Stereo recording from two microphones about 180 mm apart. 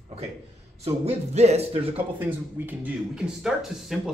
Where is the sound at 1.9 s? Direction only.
10° right (ahead or behind).